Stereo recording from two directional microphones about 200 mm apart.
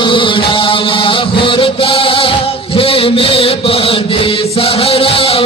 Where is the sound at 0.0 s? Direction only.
25° left (ahead or behind).